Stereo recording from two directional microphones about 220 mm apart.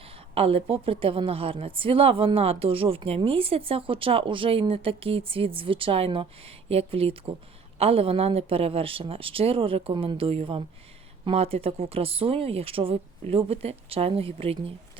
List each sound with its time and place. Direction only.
0.3 s a woman's voice: 25° right (ahead or behind)